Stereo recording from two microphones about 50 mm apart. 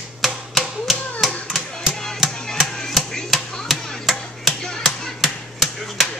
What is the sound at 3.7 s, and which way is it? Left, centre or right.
Chop, centre.